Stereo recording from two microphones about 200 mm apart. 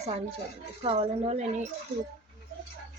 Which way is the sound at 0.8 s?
30° right (ahead or behind).